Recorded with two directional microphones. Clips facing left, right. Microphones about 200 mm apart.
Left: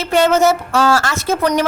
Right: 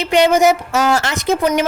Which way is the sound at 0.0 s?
15° right (ahead or behind).